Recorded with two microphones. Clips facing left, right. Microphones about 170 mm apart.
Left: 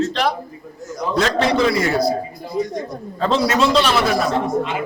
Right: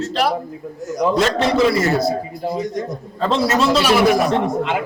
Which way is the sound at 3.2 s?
Centre (ahead or behind).